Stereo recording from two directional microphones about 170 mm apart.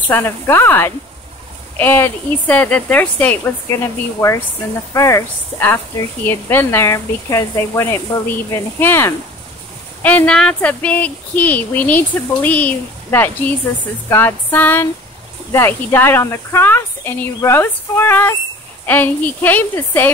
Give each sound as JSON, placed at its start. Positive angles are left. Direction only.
{"t": 0.1, "sound": "speech", "side_deg": 15}